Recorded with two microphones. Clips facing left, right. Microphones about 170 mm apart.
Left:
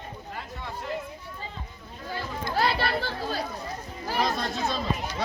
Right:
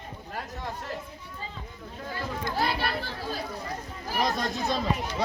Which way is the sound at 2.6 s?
80° left.